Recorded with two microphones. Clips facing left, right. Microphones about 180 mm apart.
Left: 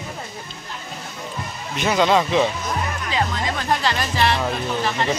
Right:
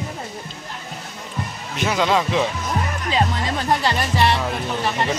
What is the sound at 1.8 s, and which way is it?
Speech, 5° right (ahead or behind).